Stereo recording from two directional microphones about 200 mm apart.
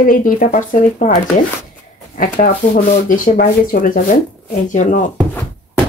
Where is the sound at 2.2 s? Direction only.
40° left (ahead or behind).